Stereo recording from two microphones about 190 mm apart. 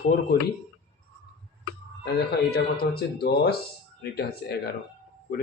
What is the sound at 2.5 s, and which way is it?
Speech, 55° left (ahead or behind).